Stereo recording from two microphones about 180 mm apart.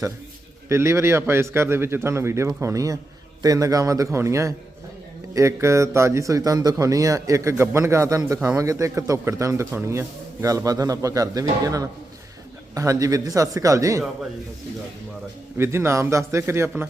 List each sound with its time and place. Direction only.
0.7 s a man's voice: 15° right (ahead or behind)
15.5 s a man's voice: 15° right (ahead or behind)